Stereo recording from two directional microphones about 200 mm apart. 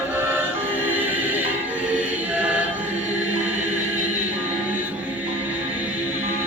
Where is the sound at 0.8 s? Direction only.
10° right (ahead or behind).